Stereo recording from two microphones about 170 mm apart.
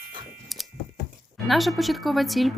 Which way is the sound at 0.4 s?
Centre (ahead or behind).